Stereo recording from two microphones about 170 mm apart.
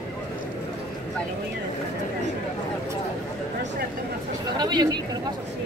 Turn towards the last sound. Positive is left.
turn(degrees=-25)  # may be behind; listen again after turning